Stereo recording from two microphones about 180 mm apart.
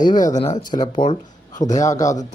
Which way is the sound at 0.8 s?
25° left (ahead or behind).